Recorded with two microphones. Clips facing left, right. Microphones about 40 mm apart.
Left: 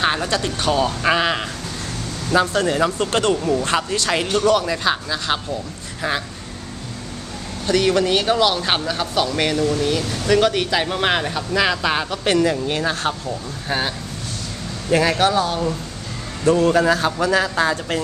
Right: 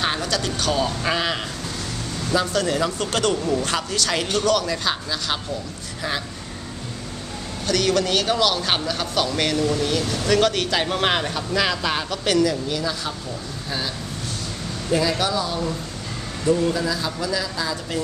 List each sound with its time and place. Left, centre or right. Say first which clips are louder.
0.0 s a sound: left 4 dB; centre
0.3 s speech: left 3 dB; left
2.4 s speech: left 3 dB; left
2.7 s speech: left 4 dB; centre
4.1 s speech: left 4 dB; centre
7.6 s speech: left 3 dB; centre
12.3 s speech: left 2 dB; left
12.6 s speech: left 5 dB; left
16.4 s speech: left 6 dB; left